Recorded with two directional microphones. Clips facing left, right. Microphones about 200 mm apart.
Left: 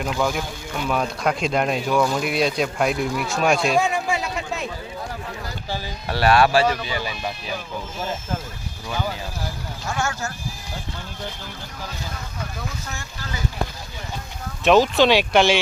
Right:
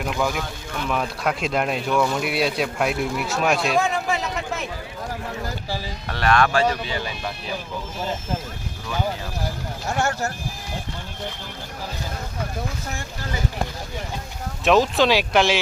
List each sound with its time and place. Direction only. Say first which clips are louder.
0.0 s speech: left 1 dB; centre (ahead or behind)
3.8 s a sound: left 1 dB; 15° left (ahead or behind)
5.6 s a sound: even; centre (ahead or behind)
6.1 s speech: left 3 dB; 10° left (ahead or behind)
9.8 s speech: right 3 dB; 35° right (ahead or behind)
14.6 s speech: left 2 dB; centre (ahead or behind)